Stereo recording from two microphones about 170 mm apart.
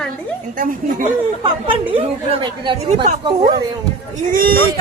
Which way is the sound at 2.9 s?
40° right (ahead or behind).